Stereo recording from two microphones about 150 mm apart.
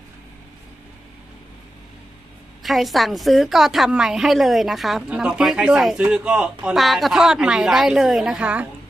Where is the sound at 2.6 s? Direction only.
Centre (ahead or behind).